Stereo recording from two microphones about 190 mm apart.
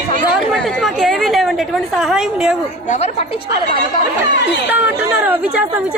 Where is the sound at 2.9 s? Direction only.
35° left (ahead or behind).